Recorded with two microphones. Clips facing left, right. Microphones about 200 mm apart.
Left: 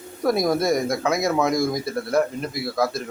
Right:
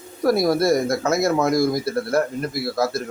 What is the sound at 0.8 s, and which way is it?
Speech, 5° right (ahead or behind).